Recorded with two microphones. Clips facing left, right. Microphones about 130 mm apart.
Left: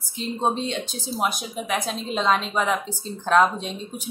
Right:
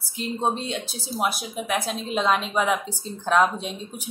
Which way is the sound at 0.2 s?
5° right (ahead or behind).